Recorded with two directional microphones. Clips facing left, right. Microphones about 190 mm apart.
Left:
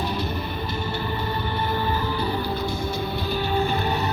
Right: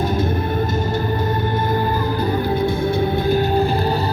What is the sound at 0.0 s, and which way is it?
Music, 45° right (ahead or behind).